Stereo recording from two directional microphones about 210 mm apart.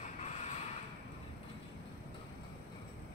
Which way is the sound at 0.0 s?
35° left (ahead or behind).